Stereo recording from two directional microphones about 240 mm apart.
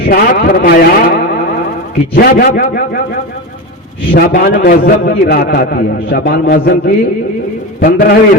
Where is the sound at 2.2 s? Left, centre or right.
Left.